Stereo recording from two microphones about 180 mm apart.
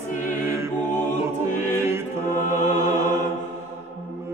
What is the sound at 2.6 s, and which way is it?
Music, 45° left (ahead or behind).